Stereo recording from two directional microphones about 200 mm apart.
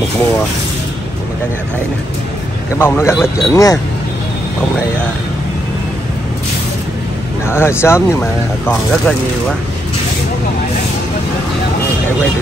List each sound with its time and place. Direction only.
2.8 s speech: 10° left (ahead or behind)
7.4 s speech: 10° left (ahead or behind)